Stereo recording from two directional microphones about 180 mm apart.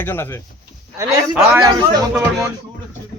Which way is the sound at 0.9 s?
15° right (ahead or behind).